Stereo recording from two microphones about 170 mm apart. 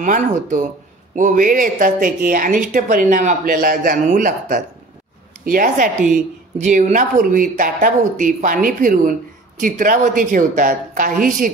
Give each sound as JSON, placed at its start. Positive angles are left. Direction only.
{"t": 0.0, "sound": "a woman's voice", "side_deg": -50}